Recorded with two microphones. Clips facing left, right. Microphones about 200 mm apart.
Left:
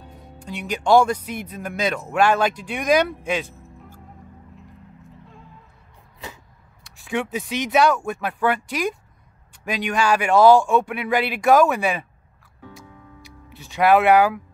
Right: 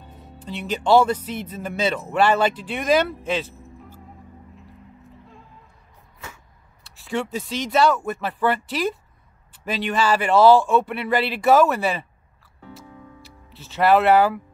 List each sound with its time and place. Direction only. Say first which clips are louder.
0.4 s speech: right 1 dB; 10° left (ahead or behind)
3.5 s music: right 2 dB; centre (ahead or behind)
5.1 s music: even; centre (ahead or behind)
6.8 s speech: left 1 dB; 15° left (ahead or behind)
9.9 s speech: left 1 dB; 15° left (ahead or behind)
13.6 s speech: left 1 dB; 15° left (ahead or behind)